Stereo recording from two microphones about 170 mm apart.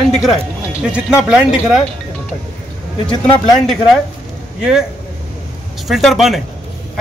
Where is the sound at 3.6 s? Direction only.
Centre (ahead or behind).